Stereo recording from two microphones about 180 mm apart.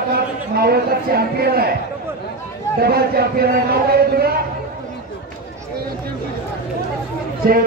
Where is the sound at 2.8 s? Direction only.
60° right (ahead or behind).